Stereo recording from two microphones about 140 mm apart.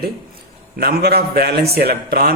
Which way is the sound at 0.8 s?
90° right.